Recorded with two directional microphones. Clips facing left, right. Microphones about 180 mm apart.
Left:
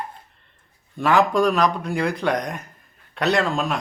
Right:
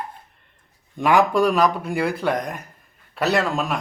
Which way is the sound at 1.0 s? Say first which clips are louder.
Right 1 dB; 15° right (ahead or behind).